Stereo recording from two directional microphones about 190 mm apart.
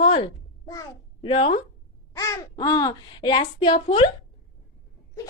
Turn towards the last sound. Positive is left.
turn(degrees=25)  # may be behind; listen again after turning